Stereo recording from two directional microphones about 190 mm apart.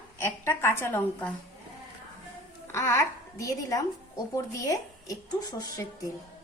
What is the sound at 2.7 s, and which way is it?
A woman's voice, 15° left (ahead or behind).